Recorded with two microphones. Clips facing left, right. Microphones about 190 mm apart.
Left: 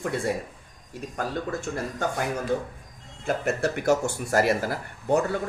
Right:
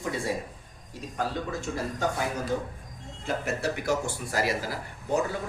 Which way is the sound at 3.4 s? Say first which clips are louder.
Left 6 dB; 50° left (ahead or behind).